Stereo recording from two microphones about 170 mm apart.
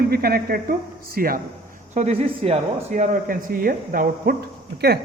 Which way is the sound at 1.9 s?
45° right (ahead or behind).